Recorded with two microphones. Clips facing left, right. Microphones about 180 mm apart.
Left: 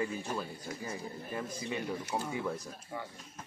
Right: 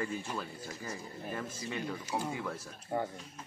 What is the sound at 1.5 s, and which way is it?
Speech, 15° left (ahead or behind).